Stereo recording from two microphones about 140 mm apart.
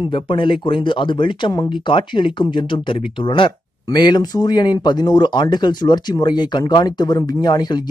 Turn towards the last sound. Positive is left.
turn(degrees=30)  # may be behind; listen again after turning